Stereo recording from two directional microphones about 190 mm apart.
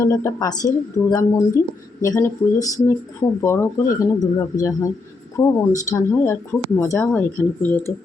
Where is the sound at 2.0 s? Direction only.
15° left (ahead or behind).